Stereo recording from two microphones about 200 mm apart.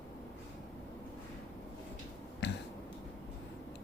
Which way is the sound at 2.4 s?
60° left (ahead or behind).